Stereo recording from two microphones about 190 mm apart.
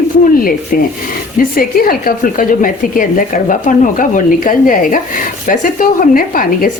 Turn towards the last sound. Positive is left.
turn(degrees=45)  # may be behind; listen again after turning